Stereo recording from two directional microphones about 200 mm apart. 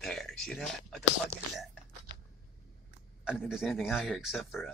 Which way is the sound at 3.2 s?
5° right (ahead or behind).